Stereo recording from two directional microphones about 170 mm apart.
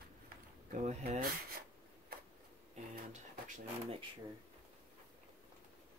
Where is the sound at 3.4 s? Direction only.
50° right (ahead or behind).